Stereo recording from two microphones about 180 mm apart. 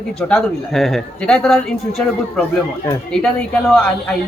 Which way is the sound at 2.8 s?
5° left (ahead or behind).